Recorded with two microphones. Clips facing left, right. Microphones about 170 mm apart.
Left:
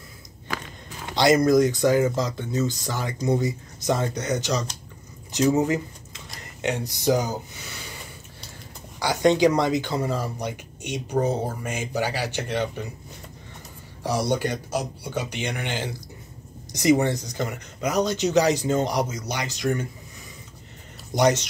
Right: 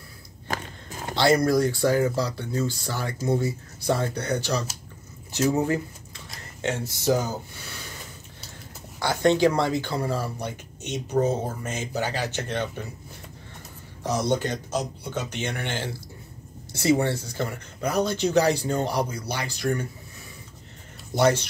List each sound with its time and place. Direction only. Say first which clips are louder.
0.5 s walk: right 1 dB; 45° right (ahead or behind)
1.1 s speech: left 3 dB; 20° left (ahead or behind)
5.6 s a sound: left 2 dB; 15° left (ahead or behind)
6.4 s speech: left 1 dB; 15° left (ahead or behind)
9.0 s speech: left 1 dB; 15° left (ahead or behind)
14.0 s speech: left 1 dB; 10° left (ahead or behind)
21.1 s speech: left 1 dB; 15° left (ahead or behind)